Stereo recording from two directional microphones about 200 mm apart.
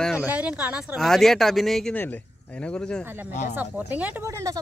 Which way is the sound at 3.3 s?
35° left (ahead or behind).